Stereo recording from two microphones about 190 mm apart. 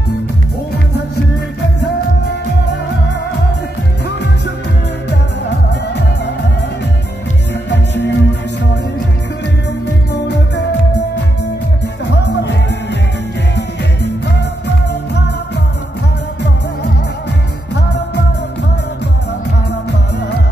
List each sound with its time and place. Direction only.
5.7 s music: 65° left (ahead or behind)
7.7 s music: 65° left (ahead or behind)
10.2 s music: 65° left (ahead or behind)
12.1 s music: 65° left (ahead or behind)